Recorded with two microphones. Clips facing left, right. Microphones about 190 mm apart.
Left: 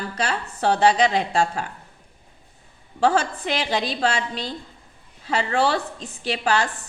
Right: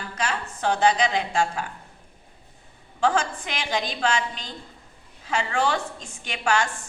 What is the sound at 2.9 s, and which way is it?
A woman's voice, 40° left (ahead or behind).